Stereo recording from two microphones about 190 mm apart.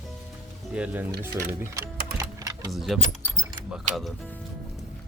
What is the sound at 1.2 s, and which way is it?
Typing, 15° right (ahead or behind).